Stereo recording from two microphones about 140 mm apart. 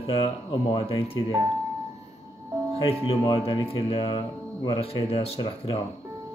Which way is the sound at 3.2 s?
30° left (ahead or behind).